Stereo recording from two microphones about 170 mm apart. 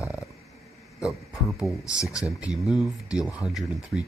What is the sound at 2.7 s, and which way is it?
Speech, 5° right (ahead or behind).